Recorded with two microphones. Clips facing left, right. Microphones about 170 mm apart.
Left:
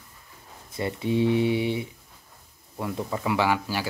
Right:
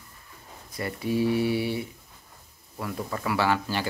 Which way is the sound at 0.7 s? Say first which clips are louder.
Left 2 dB; 20° left (ahead or behind).